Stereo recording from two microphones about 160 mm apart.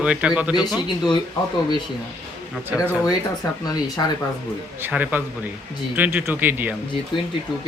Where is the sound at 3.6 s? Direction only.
25° left (ahead or behind).